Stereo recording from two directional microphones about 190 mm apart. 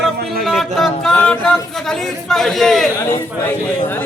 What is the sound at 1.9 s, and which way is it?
Speech, centre (ahead or behind).